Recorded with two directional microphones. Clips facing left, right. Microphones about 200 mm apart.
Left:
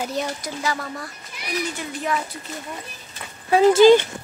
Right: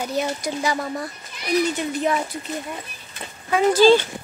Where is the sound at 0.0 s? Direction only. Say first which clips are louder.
Right 2 dB; 5° right (ahead or behind).